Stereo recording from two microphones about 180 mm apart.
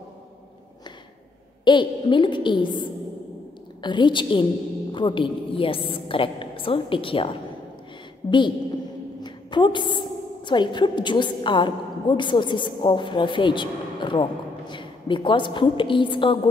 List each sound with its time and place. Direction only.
1.6 s a woman's voice: 25° left (ahead or behind)